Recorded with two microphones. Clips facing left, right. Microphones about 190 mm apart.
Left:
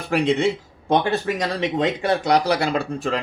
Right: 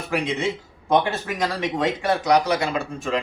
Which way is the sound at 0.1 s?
30° left (ahead or behind).